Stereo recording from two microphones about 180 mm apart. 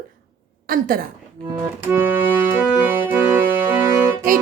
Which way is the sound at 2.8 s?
10° right (ahead or behind).